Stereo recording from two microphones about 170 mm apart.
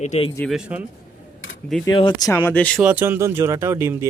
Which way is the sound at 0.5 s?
5° right (ahead or behind).